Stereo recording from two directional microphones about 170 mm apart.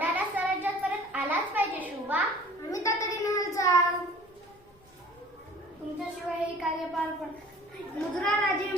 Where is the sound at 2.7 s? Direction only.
20° left (ahead or behind).